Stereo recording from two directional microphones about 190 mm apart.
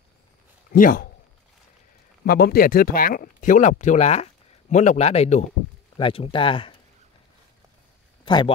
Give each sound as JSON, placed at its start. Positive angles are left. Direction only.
{"t": 0.7, "sound": "a man's voice", "side_deg": 50}
{"t": 2.2, "sound": "speech", "side_deg": 55}
{"t": 8.3, "sound": "speech", "side_deg": 25}